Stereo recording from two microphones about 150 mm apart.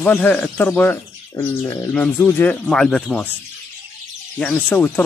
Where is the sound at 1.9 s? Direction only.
10° left (ahead or behind).